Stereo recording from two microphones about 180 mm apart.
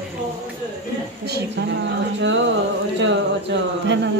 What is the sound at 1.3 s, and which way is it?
Speech, 80° right.